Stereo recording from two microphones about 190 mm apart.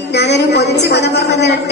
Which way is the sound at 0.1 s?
65° left (ahead or behind).